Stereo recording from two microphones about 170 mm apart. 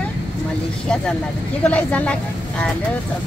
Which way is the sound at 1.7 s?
10° left (ahead or behind).